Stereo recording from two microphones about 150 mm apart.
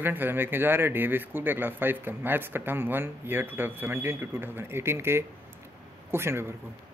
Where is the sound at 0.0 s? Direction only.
15° right (ahead or behind).